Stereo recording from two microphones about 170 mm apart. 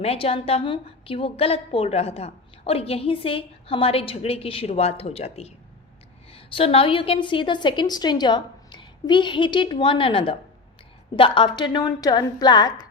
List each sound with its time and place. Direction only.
0.0 s a woman's voice: 35° left (ahead or behind)